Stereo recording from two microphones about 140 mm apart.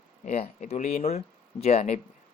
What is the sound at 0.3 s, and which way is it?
Speech, 50° left (ahead or behind).